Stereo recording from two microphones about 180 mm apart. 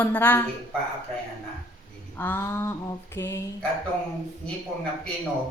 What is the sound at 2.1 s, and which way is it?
A woman's voice, 10° left (ahead or behind).